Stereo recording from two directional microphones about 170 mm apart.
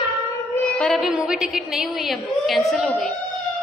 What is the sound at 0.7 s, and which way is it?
A woman's voice, 5° left (ahead or behind).